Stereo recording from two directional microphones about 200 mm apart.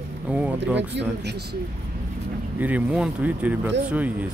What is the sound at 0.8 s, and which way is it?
Speech, 60° right (ahead or behind).